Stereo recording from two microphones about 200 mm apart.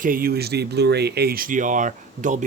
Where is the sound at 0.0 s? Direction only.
45° right (ahead or behind).